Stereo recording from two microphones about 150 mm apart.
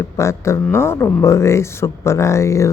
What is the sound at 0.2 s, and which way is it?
Speech, 20° left (ahead or behind).